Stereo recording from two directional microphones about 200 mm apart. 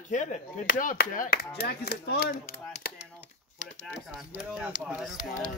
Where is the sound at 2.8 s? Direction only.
55° left (ahead or behind).